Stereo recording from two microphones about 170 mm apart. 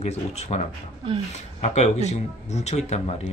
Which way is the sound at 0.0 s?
40° left (ahead or behind).